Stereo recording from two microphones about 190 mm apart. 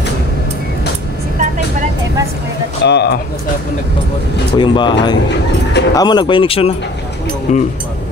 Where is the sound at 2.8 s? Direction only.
60° left (ahead or behind).